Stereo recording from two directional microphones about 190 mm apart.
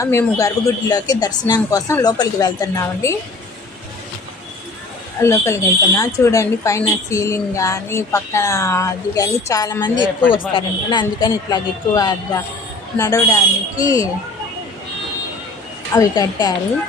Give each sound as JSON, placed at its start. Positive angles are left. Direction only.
{"t": 0.0, "sound": "a woman's voice", "side_deg": 15}
{"t": 5.2, "sound": "a woman's voice", "side_deg": 15}
{"t": 16.0, "sound": "a woman's voice", "side_deg": 20}